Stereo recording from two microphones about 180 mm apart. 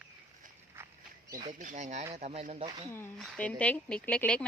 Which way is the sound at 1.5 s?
45° right (ahead or behind).